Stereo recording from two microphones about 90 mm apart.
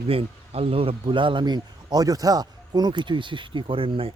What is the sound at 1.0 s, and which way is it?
Speech, 65° right (ahead or behind).